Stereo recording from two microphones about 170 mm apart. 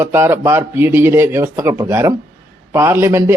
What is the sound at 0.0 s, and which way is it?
A man's voice, 15° right (ahead or behind).